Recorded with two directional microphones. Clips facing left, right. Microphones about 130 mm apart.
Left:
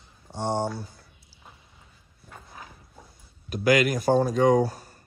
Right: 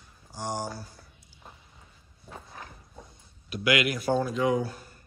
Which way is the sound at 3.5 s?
40° left (ahead or behind).